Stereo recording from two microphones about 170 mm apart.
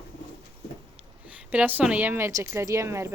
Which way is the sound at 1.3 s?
5° right (ahead or behind).